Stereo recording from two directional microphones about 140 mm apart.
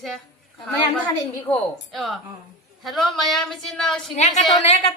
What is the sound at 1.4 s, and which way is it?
Speech, centre (ahead or behind).